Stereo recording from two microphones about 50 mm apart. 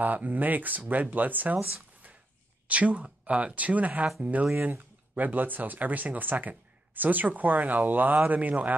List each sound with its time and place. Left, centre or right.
0.0 s speech: right
2.7 s speech: right